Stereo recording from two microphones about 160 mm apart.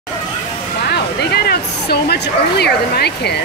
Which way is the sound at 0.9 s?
90° left.